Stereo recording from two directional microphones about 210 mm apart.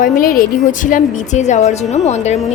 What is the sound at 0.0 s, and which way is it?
A woman's voice, 40° left (ahead or behind).